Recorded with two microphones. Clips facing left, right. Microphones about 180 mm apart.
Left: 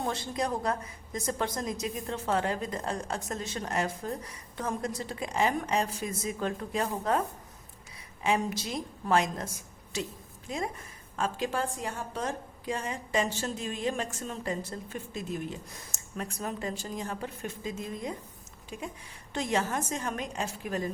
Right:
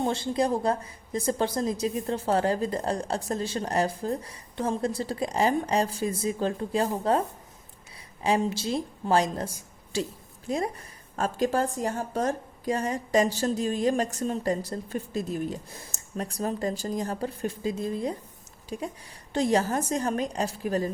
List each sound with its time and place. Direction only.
0.0 s a woman's voice: 30° right (ahead or behind)